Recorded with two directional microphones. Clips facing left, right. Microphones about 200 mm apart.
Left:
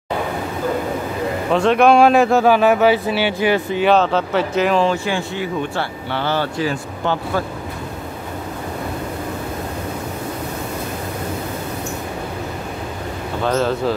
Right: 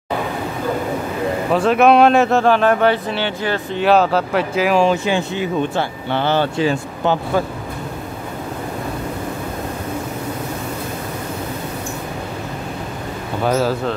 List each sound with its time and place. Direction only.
1.5 s speech: 5° right (ahead or behind)
3.8 s speech: 5° right (ahead or behind)
13.4 s speech: 5° right (ahead or behind)